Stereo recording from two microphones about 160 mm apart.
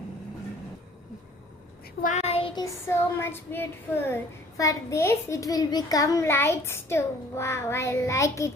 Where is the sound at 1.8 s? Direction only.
55° left (ahead or behind); by 2.6 s 35° left (ahead or behind).